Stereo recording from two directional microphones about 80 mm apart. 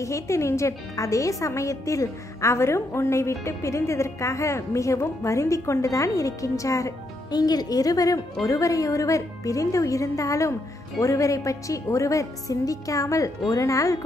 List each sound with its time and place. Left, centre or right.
0.0 s a woman's voice: left
7.2 s a woman's voice: left